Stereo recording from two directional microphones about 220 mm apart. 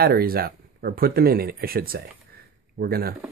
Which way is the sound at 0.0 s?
45° right (ahead or behind).